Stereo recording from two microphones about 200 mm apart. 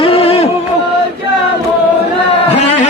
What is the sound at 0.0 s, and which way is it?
Music, 30° left (ahead or behind).